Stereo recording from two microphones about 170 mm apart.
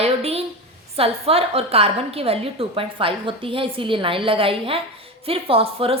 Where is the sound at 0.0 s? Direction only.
35° right (ahead or behind).